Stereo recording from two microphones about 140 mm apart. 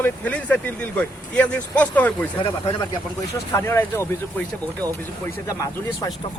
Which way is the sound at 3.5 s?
15° left (ahead or behind).